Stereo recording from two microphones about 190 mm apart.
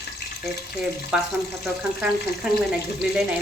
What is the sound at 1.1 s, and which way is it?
Speech, 5° right (ahead or behind).